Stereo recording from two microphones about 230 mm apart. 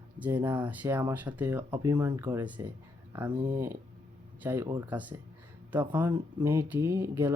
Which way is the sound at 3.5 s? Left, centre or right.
Centre.